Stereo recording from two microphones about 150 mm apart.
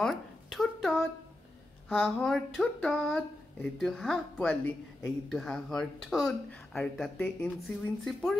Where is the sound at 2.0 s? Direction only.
5° left (ahead or behind).